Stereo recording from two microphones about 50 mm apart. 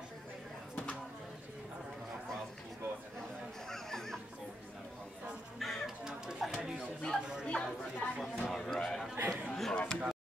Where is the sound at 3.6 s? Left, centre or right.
Centre.